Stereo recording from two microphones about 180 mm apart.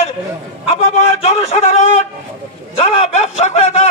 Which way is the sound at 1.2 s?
35° left (ahead or behind).